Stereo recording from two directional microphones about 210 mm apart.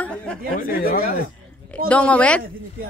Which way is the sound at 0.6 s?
45° left (ahead or behind).